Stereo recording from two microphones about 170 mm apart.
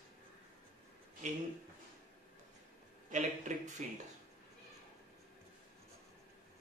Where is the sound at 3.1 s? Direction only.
45° right (ahead or behind).